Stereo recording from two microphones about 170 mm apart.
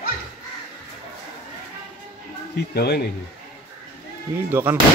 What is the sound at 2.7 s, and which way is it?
Speech, 70° left (ahead or behind).